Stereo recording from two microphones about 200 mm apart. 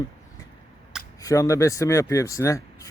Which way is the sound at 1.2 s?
15° left (ahead or behind).